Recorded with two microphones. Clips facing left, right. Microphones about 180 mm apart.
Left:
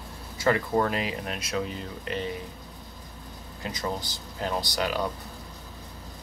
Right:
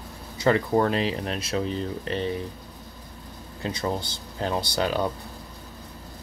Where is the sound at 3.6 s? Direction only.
25° right (ahead or behind).